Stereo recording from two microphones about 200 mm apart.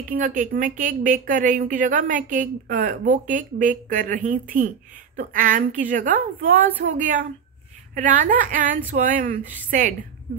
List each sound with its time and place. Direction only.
0.1 s speech: 40° right (ahead or behind)